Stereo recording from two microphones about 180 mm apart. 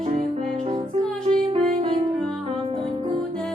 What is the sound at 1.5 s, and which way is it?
Music, 30° right (ahead or behind).